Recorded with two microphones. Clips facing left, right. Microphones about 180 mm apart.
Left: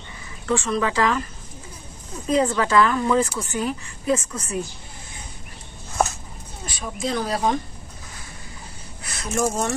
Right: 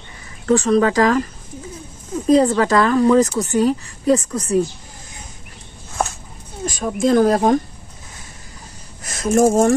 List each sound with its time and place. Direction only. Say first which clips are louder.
0.5 s speech: right 8 dB; 40° right (ahead or behind)
2.2 s speech: right 7 dB; 35° right (ahead or behind)
6.6 s speech: right 10 dB; 45° right (ahead or behind)
9.0 s speech: right 9 dB; 45° right (ahead or behind)